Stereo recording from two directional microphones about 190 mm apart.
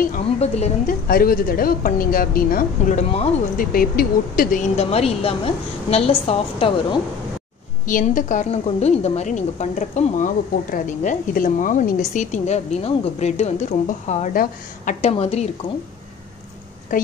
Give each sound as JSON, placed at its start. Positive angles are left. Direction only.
{"t": 0.1, "sound": "a woman's voice", "side_deg": 40}
{"t": 1.0, "sound": "a woman's voice", "side_deg": 50}
{"t": 3.5, "sound": "a woman's voice", "side_deg": 50}
{"t": 7.8, "sound": "a woman's voice", "side_deg": 45}
{"t": 15.0, "sound": "a woman's voice", "side_deg": 30}
{"t": 16.9, "sound": "a woman's voice", "side_deg": 45}